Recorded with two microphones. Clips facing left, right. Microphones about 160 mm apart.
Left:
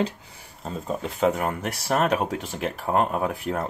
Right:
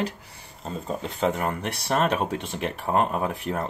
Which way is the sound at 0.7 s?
5° left (ahead or behind).